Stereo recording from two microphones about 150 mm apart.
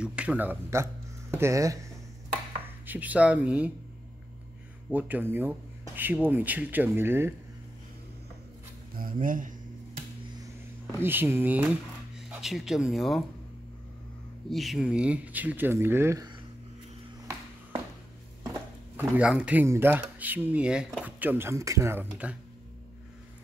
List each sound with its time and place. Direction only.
0.0 s speech: 5° right (ahead or behind)
2.9 s speech: 10° right (ahead or behind)
4.9 s speech: 10° right (ahead or behind)
8.9 s a sound: 70° right (ahead or behind)
10.4 s speech: 20° right (ahead or behind); by 13.2 s centre (ahead or behind)
14.5 s speech: centre (ahead or behind); by 16.3 s 15° right (ahead or behind)
18.9 s speech: 10° right (ahead or behind)